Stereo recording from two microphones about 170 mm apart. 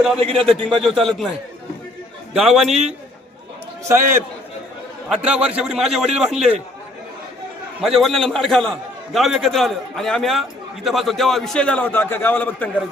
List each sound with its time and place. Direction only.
0.2 s a man's voice: 35° right (ahead or behind)
0.8 s a man's voice: centre (ahead or behind)
2.3 s a man's voice: centre (ahead or behind)
3.8 s a man's voice: 15° right (ahead or behind)
5.2 s a man's voice: 5° right (ahead or behind)
7.8 s a man's voice: centre (ahead or behind)